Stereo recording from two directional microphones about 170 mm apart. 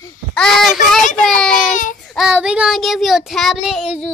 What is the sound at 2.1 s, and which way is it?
Child singing, 5° right (ahead or behind).